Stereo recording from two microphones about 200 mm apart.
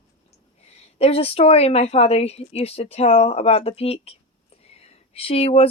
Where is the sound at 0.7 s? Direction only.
30° left (ahead or behind).